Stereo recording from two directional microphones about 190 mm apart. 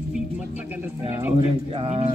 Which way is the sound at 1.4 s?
30° right (ahead or behind).